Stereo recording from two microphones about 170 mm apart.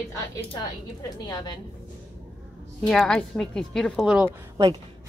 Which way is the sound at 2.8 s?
Centre (ahead or behind).